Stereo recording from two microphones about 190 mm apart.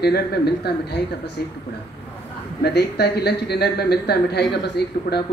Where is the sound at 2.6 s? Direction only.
60° left (ahead or behind).